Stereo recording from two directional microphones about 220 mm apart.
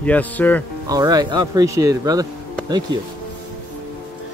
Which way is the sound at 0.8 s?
15° right (ahead or behind).